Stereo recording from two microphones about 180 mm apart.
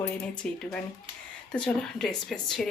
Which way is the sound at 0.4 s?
5° left (ahead or behind).